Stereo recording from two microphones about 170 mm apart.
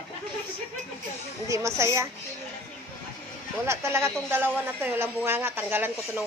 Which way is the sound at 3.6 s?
15° right (ahead or behind).